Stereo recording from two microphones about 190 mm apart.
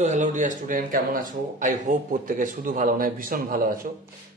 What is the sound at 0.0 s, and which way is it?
Speech, 40° right (ahead or behind).